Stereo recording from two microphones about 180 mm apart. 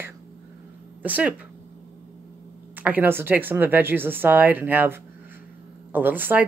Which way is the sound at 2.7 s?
10° right (ahead or behind).